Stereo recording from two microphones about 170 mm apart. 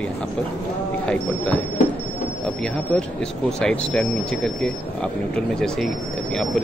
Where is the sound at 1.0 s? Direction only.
5° left (ahead or behind).